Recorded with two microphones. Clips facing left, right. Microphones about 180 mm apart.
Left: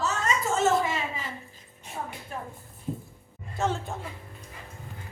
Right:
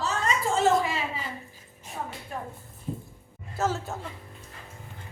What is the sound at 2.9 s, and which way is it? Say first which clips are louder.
Music: left 1 dB; 5° left (ahead or behind).